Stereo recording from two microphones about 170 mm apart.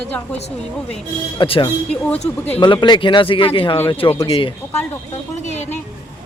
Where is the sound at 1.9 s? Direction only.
5° left (ahead or behind).